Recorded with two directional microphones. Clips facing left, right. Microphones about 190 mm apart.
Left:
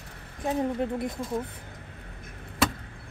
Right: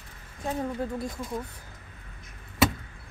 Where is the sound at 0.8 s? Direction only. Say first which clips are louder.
Left 3 dB; 20° left (ahead or behind).